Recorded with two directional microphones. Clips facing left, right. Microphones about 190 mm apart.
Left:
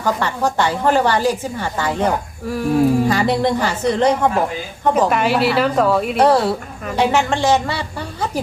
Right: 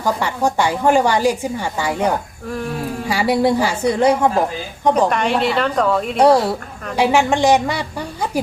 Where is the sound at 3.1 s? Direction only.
10° right (ahead or behind).